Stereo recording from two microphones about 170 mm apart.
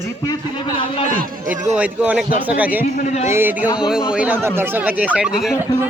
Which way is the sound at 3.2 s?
15° right (ahead or behind).